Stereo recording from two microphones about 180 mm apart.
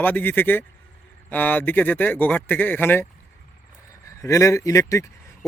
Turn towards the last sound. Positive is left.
turn(degrees=15)  # may be behind; listen again after turning